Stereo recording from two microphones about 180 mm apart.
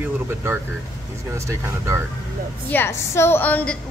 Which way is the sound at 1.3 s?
15° right (ahead or behind).